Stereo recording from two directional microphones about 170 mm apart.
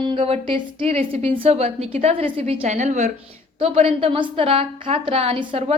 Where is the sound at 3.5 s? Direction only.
35° right (ahead or behind).